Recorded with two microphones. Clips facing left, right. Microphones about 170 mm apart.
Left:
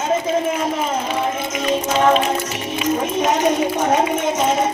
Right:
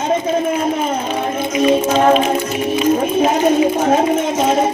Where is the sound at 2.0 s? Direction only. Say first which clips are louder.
Right 1 dB; 45° right (ahead or behind).